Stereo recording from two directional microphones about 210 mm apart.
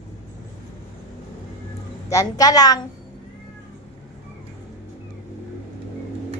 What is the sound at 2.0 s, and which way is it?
Speech, 15° left (ahead or behind).